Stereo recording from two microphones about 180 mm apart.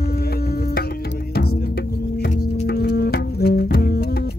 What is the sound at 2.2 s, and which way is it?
Music, 60° left (ahead or behind).